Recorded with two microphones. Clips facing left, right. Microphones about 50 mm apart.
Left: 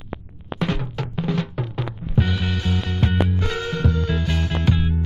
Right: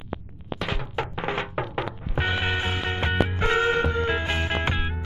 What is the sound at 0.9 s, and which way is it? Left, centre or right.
Music, right.